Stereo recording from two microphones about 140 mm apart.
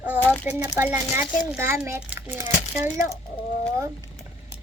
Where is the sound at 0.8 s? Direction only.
15° right (ahead or behind).